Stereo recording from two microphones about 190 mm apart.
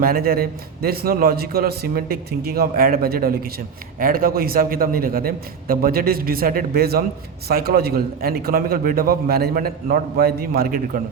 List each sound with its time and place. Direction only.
0.0 s a man's voice: 50° right (ahead or behind)